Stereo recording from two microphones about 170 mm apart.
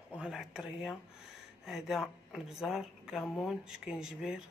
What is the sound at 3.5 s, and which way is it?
Speech, 5° right (ahead or behind).